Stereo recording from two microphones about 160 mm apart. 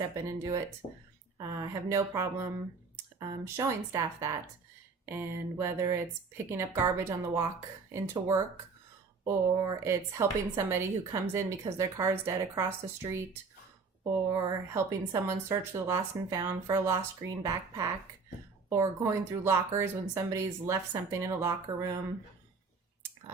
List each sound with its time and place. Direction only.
0.3 s a woman's voice: 20° right (ahead or behind)
14.3 s speech: 20° right (ahead or behind)